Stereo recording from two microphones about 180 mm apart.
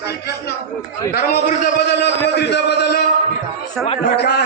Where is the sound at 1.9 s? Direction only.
70° left (ahead or behind).